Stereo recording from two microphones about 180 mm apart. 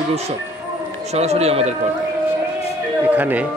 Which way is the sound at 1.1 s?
35° right (ahead or behind).